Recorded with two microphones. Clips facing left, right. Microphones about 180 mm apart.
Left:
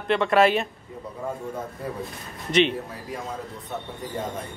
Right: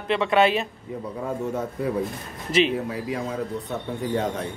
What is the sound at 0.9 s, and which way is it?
Speech, 90° right.